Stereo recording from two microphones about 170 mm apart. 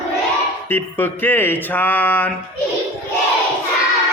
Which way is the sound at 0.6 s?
10° left (ahead or behind).